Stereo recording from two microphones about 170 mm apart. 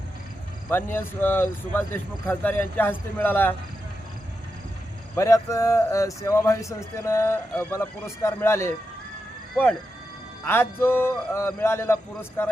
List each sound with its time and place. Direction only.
0.9 s a man's voice: 10° left (ahead or behind)
5.1 s a man's voice: 20° left (ahead or behind)